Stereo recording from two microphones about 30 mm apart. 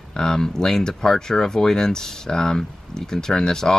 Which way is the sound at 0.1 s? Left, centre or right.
Left.